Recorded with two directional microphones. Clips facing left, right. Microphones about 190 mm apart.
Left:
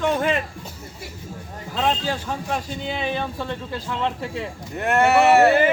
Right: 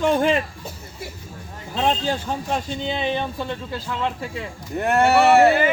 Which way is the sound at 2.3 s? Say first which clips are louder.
Right 2 dB; 25° right (ahead or behind).